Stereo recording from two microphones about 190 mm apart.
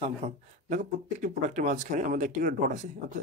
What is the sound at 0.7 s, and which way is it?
Speech, 40° right (ahead or behind).